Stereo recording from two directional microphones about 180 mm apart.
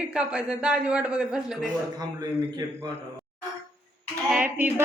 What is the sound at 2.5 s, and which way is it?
Speech, 20° right (ahead or behind).